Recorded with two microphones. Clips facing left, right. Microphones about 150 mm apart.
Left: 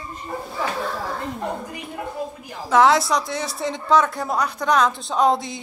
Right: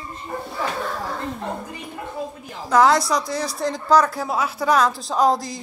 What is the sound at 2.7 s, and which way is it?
Speech, centre (ahead or behind).